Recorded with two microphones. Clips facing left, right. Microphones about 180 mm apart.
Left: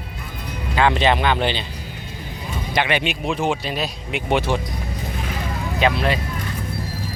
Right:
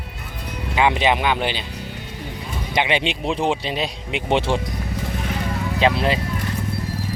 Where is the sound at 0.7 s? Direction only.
15° right (ahead or behind).